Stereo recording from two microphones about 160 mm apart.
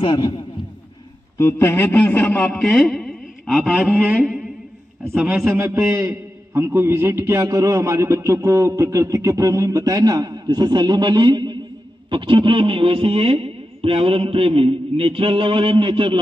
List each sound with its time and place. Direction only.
0.0 s a man's voice: 30° left (ahead or behind)
1.4 s a man's voice: 15° left (ahead or behind); by 16.2 s 30° right (ahead or behind)